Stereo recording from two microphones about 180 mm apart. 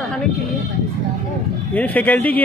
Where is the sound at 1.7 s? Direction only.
10° left (ahead or behind).